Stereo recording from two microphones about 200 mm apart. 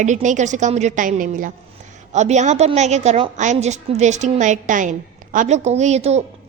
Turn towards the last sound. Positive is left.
turn(degrees=-35)  # may be behind; listen again after turning